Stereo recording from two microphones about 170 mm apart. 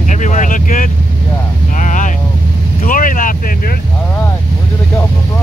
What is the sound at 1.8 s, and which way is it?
Boat, 50° left (ahead or behind).